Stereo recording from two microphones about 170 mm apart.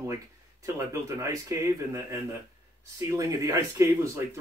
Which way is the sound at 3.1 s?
20° right (ahead or behind).